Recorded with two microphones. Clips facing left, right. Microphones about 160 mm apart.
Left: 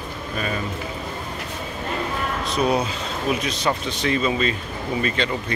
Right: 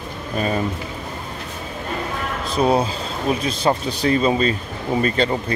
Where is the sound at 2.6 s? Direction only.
30° right (ahead or behind).